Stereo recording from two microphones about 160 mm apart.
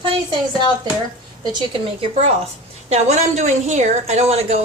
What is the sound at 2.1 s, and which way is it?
A woman's voice, 40° right (ahead or behind).